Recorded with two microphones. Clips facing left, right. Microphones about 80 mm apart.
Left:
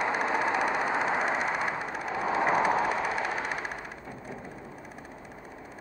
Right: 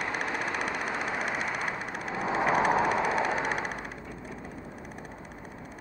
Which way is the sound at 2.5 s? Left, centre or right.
Centre.